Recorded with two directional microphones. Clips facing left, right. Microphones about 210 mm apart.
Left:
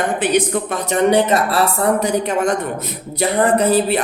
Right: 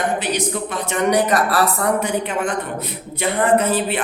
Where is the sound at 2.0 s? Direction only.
40° left (ahead or behind).